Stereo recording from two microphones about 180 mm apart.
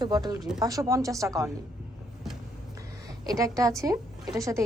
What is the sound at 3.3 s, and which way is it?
Speech, 20° right (ahead or behind).